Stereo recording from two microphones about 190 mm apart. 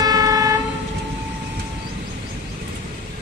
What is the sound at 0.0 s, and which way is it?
Train, 20° right (ahead or behind).